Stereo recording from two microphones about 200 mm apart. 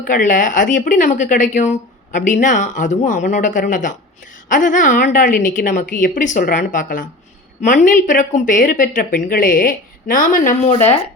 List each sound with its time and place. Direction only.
0.0 s a woman's voice: 40° left (ahead or behind)